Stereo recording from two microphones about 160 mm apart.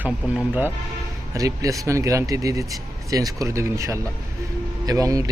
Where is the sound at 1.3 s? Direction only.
20° right (ahead or behind).